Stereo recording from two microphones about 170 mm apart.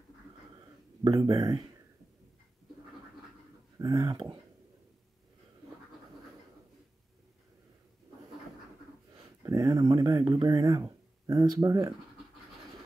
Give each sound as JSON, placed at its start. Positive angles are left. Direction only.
{"t": 1.0, "sound": "speech", "side_deg": -25}
{"t": 3.8, "sound": "speech", "side_deg": -20}
{"t": 9.4, "sound": "speech", "side_deg": -20}